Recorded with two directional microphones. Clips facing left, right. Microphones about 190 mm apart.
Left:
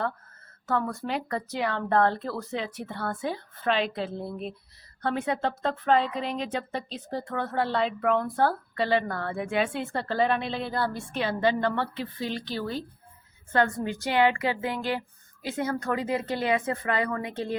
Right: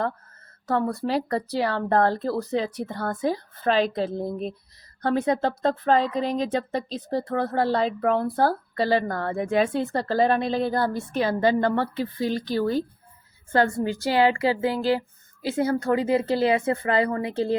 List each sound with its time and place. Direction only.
0.7 s a woman's voice: 35° right (ahead or behind)
13.5 s a woman's voice: 30° right (ahead or behind)